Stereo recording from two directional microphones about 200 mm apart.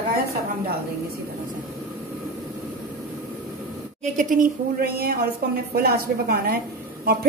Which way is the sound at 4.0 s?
40° right (ahead or behind).